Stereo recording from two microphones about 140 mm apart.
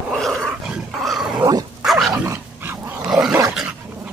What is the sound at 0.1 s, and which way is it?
Dog, centre (ahead or behind).